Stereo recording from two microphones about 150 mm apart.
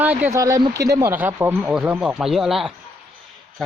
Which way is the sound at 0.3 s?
20° right (ahead or behind).